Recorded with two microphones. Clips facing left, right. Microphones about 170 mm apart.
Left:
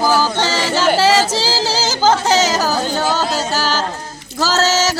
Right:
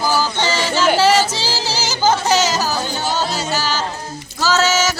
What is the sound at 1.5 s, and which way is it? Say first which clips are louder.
A capella: left 4 dB; 90° left.